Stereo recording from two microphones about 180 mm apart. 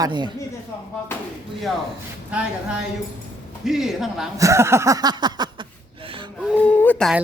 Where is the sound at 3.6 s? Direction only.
Centre (ahead or behind).